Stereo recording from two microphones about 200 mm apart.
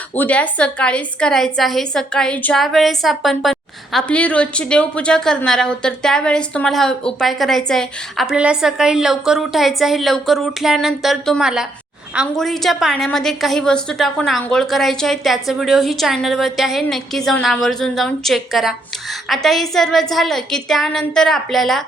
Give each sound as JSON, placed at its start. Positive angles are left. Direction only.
{"t": 0.2, "sound": "a woman's voice", "side_deg": 5}